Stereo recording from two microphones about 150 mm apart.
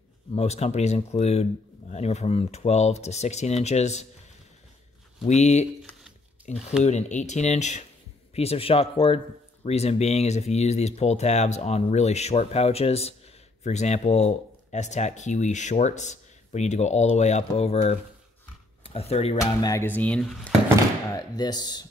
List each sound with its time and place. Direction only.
0.3 s speech: 45° left (ahead or behind)
5.2 s speech: 50° left (ahead or behind)
19.4 s speech: 20° left (ahead or behind); by 20.5 s 5° left (ahead or behind)
21.1 s speech: 25° left (ahead or behind)